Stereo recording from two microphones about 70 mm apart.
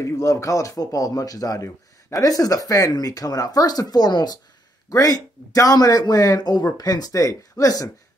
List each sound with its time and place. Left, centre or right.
0.0 s speech: left
4.8 s speech: left